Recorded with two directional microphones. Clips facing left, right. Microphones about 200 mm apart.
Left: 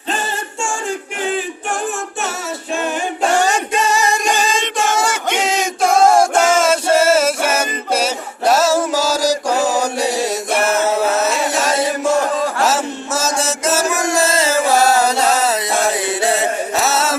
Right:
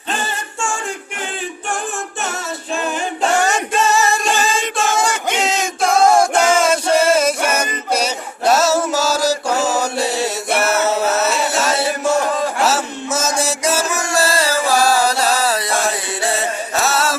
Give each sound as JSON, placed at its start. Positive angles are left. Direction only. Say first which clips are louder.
{"t": 3.7, "sound": "singing", "louder": "right 1 dB", "side_deg": 10}
{"t": 6.3, "sound": "music", "louder": "left 1 dB", "side_deg": 5}
{"t": 14.1, "sound": "music", "louder": "even", "side_deg": 20}
{"t": 16.2, "sound": "chant", "louder": "left 2 dB", "side_deg": 20}